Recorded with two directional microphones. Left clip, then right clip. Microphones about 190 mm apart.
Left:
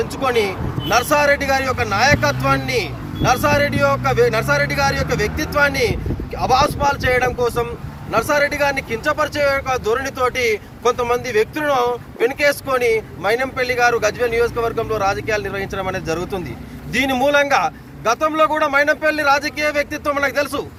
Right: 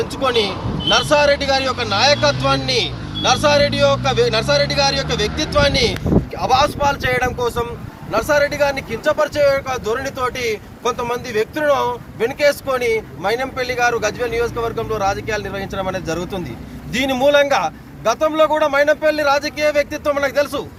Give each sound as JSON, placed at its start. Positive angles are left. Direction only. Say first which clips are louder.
{"t": 0.0, "sound": "a man's voice", "louder": "even", "side_deg": 20}